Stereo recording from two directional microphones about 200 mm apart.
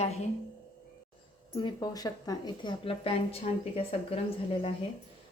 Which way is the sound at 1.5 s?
20° left (ahead or behind).